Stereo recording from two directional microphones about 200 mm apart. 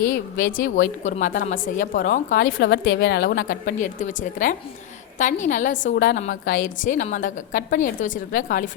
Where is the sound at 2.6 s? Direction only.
60° left (ahead or behind); by 8.7 s 40° left (ahead or behind).